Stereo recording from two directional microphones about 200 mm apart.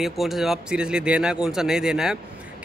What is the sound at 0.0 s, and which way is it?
Speech, centre (ahead or behind).